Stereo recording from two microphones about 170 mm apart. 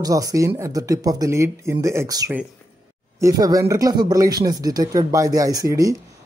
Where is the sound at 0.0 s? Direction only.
20° right (ahead or behind).